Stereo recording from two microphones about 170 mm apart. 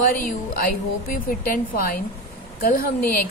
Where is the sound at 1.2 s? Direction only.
60° left (ahead or behind).